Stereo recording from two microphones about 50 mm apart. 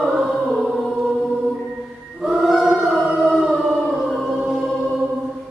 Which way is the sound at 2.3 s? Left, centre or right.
Centre.